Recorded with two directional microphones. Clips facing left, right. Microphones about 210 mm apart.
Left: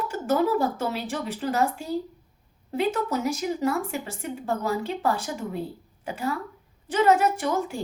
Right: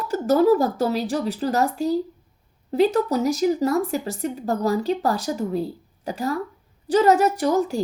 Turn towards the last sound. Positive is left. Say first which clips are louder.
# right 6 dB
turn(degrees=-40)  # may be behind; listen again after turning